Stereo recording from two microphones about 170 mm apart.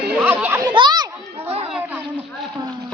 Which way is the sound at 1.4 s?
35° right (ahead or behind).